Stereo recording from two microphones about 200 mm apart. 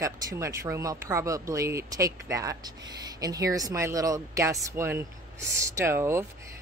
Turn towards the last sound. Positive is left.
turn(degrees=-15)  # may be behind; listen again after turning